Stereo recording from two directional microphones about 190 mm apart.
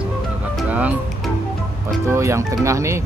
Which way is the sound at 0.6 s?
10° right (ahead or behind).